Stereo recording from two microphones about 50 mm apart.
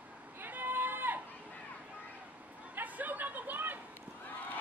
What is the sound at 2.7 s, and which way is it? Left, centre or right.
Chatter, right.